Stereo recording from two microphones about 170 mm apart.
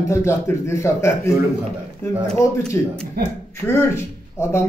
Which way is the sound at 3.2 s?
65° right (ahead or behind).